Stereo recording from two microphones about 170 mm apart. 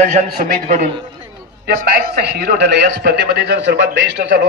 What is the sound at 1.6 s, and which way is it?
A man's voice, 65° right (ahead or behind).